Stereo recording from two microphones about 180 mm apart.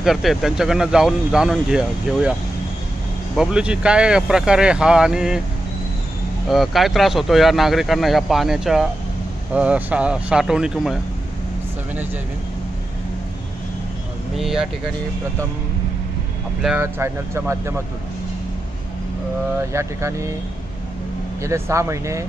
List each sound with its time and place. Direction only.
0.0 s speech: centre (ahead or behind)
3.3 s speech: 5° right (ahead or behind)
6.5 s speech: centre (ahead or behind)
14.3 s speech: centre (ahead or behind)
16.6 s speech: 10° right (ahead or behind)
19.7 s speech: 15° right (ahead or behind)
21.4 s speech: 15° right (ahead or behind)